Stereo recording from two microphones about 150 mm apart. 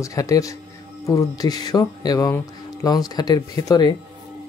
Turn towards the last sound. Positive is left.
turn(degrees=25)  # may be behind; listen again after turning